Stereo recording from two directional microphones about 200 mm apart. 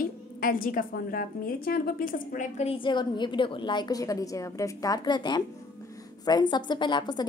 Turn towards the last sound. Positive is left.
turn(degrees=20)  # may be behind; listen again after turning